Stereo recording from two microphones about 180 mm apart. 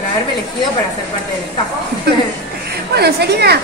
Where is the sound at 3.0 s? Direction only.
65° right (ahead or behind).